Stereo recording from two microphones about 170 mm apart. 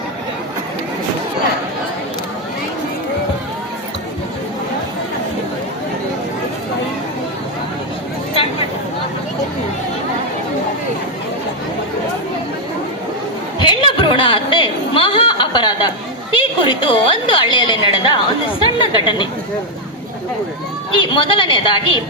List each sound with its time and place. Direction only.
13.7 s a sound: 30° left (ahead or behind)
16.3 s a woman's voice: 30° left (ahead or behind)
20.9 s a woman's voice: 30° left (ahead or behind)